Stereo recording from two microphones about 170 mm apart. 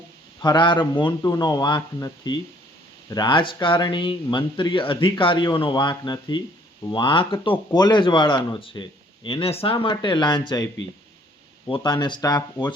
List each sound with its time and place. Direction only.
0.4 s speech: 25° left (ahead or behind)
11.7 s speech: 25° left (ahead or behind)